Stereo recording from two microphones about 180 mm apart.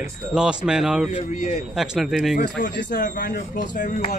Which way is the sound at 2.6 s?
50° left (ahead or behind).